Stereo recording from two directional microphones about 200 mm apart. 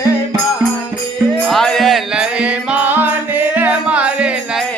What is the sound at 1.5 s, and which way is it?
Music, centre (ahead or behind).